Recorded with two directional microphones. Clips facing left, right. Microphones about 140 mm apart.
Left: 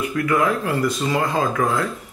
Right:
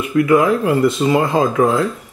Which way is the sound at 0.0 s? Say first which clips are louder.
Right 6 dB; 25° right (ahead or behind).